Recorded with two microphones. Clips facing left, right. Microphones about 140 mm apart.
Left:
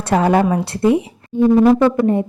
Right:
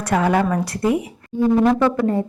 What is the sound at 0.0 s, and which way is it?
A woman's voice, 30° left (ahead or behind).